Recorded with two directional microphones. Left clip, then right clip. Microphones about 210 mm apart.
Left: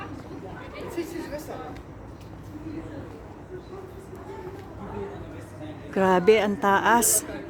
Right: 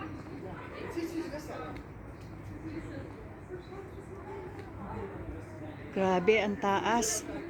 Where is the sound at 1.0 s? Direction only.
45° left (ahead or behind).